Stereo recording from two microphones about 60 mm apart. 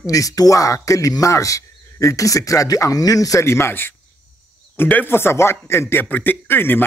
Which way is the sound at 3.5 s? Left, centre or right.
Left.